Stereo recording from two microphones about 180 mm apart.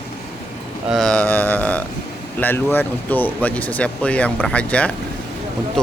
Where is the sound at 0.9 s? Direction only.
5° left (ahead or behind).